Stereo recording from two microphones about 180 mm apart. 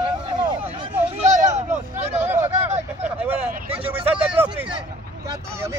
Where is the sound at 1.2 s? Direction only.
40° right (ahead or behind).